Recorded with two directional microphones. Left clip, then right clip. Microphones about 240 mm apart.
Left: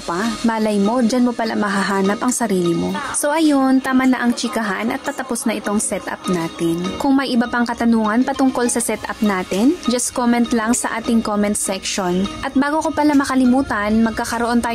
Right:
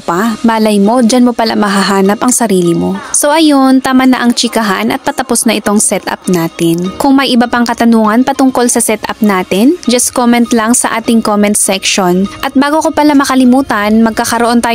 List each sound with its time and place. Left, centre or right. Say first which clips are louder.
0.2 s speech: right 8 dB; right